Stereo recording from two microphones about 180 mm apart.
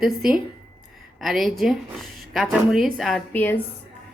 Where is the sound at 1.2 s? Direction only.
Centre (ahead or behind).